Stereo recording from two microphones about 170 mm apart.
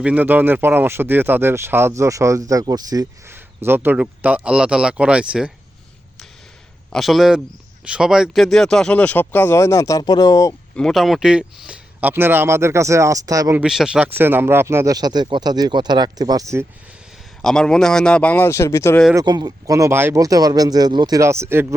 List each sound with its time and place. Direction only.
0.0 s speech: 10° right (ahead or behind)
6.9 s a man's voice: centre (ahead or behind); by 10.5 s 20° left (ahead or behind)
10.8 s speech: centre (ahead or behind); by 13.6 s 20° right (ahead or behind)
13.6 s speech: 5° right (ahead or behind); by 16.6 s 20° right (ahead or behind)
17.4 s speech: 5° left (ahead or behind)
19.1 s speech: 25° right (ahead or behind)